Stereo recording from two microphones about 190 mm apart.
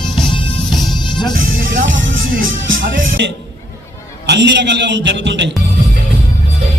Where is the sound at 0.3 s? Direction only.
25° left (ahead or behind).